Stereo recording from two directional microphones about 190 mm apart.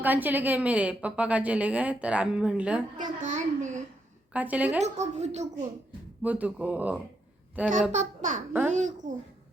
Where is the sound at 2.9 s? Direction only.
40° right (ahead or behind).